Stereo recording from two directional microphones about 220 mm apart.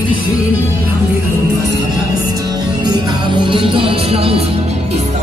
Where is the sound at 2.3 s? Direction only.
20° right (ahead or behind).